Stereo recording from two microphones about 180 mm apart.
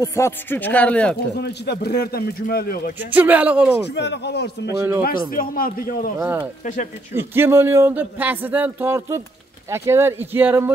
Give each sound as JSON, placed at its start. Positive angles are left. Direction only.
{"t": 0.0, "sound": "speech", "side_deg": 15}
{"t": 1.3, "sound": "a man's voice", "side_deg": 65}
{"t": 3.1, "sound": "speech", "side_deg": -10}
{"t": 3.9, "sound": "speech", "side_deg": 70}
{"t": 5.3, "sound": "a man's voice", "side_deg": 55}
{"t": 6.1, "sound": "speech", "side_deg": -10}
{"t": 6.6, "sound": "a man's voice", "side_deg": 45}
{"t": 7.2, "sound": "speech", "side_deg": -15}